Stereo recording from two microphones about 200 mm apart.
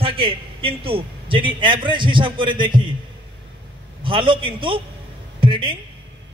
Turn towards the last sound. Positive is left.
turn(degrees=-25)  # may be behind; listen again after turning